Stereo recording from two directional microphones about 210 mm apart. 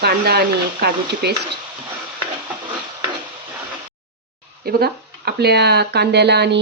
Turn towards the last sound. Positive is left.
turn(degrees=-50)  # may be behind; listen again after turning